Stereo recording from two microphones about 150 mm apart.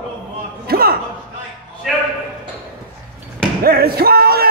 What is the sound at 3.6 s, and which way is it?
Music, 90° right.